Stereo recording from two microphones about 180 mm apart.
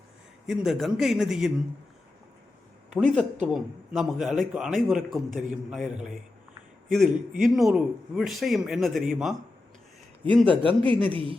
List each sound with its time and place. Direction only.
0.4 s speech: 5° right (ahead or behind)
2.9 s a man's voice: 5° left (ahead or behind)
10.5 s a man's voice: 30° right (ahead or behind)